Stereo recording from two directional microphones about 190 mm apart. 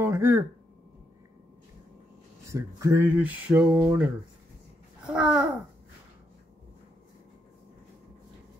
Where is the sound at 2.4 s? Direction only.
15° right (ahead or behind).